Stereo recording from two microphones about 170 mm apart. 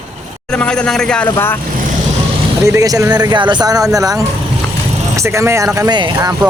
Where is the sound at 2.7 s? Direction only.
20° right (ahead or behind).